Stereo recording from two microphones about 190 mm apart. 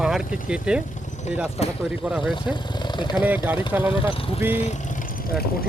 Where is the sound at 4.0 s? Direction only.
30° left (ahead or behind).